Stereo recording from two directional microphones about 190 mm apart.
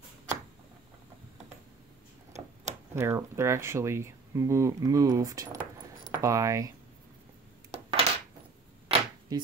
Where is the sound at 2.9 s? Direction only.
15° right (ahead or behind).